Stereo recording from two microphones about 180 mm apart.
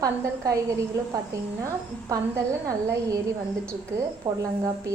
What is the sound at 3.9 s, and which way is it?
Speech, 15° right (ahead or behind).